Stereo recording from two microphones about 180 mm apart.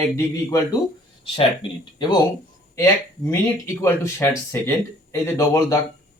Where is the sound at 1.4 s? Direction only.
30° left (ahead or behind).